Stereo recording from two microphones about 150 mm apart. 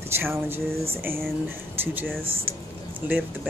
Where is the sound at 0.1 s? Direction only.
15° right (ahead or behind).